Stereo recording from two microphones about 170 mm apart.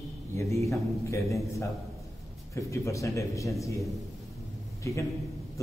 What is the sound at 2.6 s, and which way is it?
Speech, 20° left (ahead or behind).